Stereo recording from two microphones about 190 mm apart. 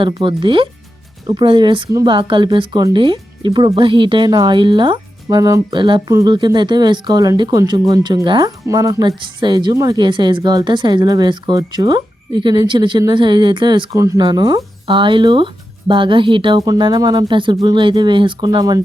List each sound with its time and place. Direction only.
0.0 s speech: 25° right (ahead or behind)